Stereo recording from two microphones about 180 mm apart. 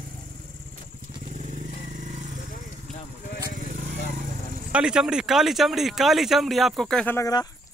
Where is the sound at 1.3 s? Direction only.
40° right (ahead or behind).